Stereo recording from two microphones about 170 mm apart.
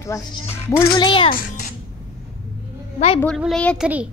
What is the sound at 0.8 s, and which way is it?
Speech, 25° left (ahead or behind).